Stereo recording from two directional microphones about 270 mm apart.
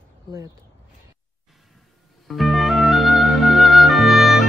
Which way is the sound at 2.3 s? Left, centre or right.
Centre.